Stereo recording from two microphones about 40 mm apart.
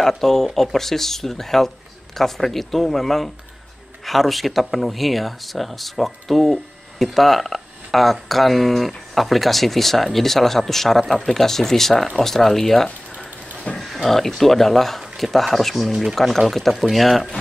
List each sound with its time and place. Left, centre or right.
0.0 s speech: centre